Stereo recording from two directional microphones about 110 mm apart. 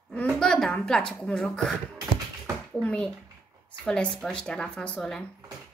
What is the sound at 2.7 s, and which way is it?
Speech, 10° left (ahead or behind).